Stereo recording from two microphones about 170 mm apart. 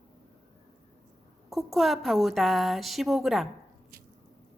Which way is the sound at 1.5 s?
Centre (ahead or behind).